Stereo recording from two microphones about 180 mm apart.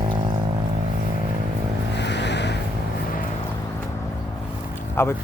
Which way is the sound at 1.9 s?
70° left (ahead or behind).